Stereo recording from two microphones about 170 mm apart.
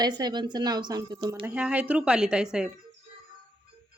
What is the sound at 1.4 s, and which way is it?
Speech, 5° right (ahead or behind).